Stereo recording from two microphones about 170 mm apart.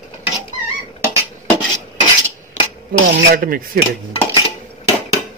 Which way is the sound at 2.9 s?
60° right (ahead or behind).